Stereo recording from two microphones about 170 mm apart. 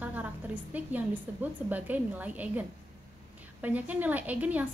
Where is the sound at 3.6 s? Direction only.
10° right (ahead or behind).